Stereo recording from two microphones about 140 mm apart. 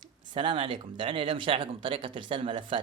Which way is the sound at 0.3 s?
40° right (ahead or behind).